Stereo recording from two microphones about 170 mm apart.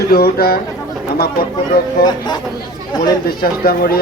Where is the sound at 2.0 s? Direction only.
25° left (ahead or behind).